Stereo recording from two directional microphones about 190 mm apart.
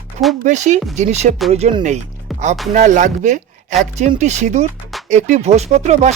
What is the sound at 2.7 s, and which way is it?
Speech, 40° right (ahead or behind).